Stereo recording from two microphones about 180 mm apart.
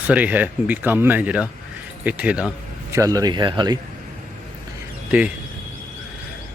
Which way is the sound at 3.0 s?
20° right (ahead or behind).